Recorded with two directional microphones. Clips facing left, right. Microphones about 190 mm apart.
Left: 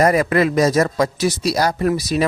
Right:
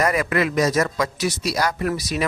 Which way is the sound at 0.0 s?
35° left (ahead or behind).